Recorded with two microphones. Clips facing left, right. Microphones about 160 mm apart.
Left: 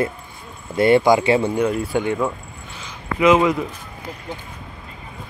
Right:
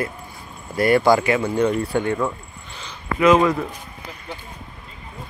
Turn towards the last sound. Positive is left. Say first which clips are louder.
# even
turn(degrees=10)  # may be behind; listen again after turning